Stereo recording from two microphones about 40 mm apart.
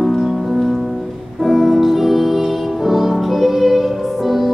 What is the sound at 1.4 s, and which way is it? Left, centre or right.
Music, centre.